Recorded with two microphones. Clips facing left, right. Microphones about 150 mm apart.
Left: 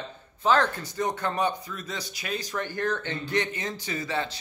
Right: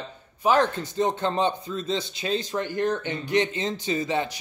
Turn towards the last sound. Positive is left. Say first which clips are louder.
# right 5 dB
turn(degrees=-15)  # may be behind; listen again after turning